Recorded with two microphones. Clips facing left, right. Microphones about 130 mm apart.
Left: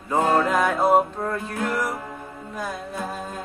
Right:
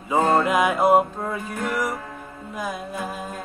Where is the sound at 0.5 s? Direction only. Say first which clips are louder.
Right 1 dB; 10° right (ahead or behind).